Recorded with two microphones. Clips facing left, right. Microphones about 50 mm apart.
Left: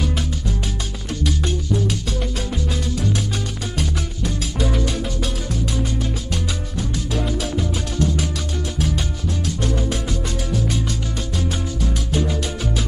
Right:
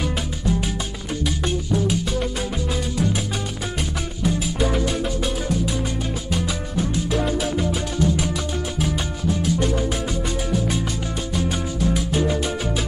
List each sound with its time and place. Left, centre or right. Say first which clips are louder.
1.2 s music: left 1 dB; centre
4.2 s music: right 4 dB; centre
6.3 s music: right 2 dB; centre
9.6 s music: right 1 dB; centre
11.3 s music: right 2 dB; centre